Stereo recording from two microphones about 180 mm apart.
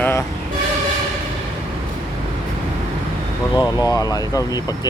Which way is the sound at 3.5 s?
20° left (ahead or behind).